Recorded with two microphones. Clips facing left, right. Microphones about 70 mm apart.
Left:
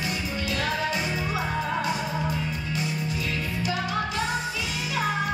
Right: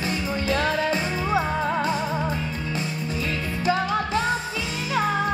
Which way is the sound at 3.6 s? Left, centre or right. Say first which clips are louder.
Right 6 dB; right.